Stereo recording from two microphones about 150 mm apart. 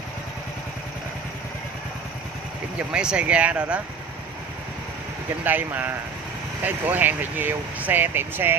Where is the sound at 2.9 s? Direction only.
5° right (ahead or behind).